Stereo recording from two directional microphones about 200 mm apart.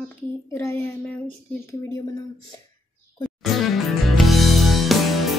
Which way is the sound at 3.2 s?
Centre (ahead or behind).